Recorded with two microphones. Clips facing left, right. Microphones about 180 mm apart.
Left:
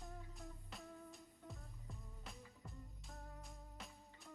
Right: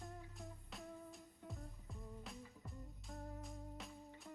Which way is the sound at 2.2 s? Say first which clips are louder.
Right 3 dB; centre (ahead or behind).